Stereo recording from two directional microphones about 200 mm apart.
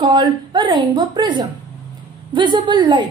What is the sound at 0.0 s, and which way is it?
A woman's voice, 20° right (ahead or behind).